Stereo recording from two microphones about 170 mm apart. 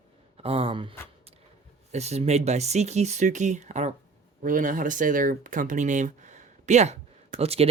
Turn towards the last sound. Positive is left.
turn(degrees=-35)  # may be behind; listen again after turning